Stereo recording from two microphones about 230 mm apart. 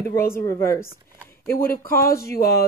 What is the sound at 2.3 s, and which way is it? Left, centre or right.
Speech, left.